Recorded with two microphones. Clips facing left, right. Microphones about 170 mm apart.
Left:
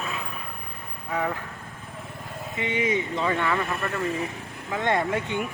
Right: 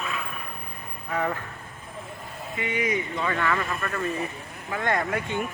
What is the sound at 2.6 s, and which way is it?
A woman's voice, 25° left (ahead or behind).